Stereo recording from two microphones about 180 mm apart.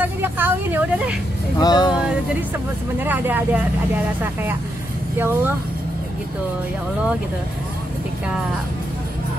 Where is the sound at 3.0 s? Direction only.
10° right (ahead or behind).